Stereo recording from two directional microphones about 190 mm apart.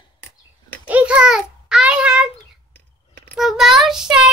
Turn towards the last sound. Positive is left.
turn(degrees=-5)  # may be behind; listen again after turning